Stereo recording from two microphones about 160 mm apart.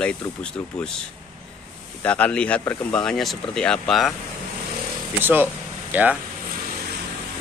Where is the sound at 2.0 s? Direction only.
10° left (ahead or behind).